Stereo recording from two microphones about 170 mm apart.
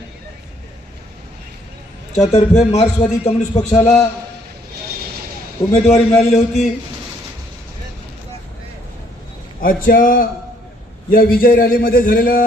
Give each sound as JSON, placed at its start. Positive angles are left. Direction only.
{"t": 2.2, "sound": "a man's voice", "side_deg": 40}
{"t": 5.7, "sound": "a man's voice", "side_deg": 40}
{"t": 9.6, "sound": "a man's voice", "side_deg": 55}